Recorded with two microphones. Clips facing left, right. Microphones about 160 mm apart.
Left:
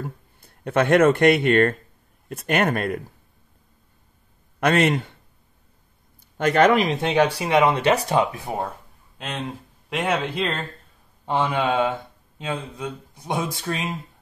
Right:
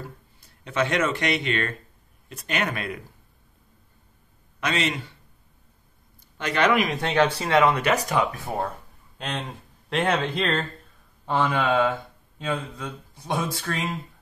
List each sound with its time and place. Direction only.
0.0 s speech: 55° left (ahead or behind)
4.6 s speech: 55° left (ahead or behind)
6.3 s speech: 50° left (ahead or behind)
6.9 s speech: 20° left (ahead or behind)
8.2 s speech: 20° left (ahead or behind)
9.2 s speech: 5° left (ahead or behind)
11.2 s speech: 20° left (ahead or behind)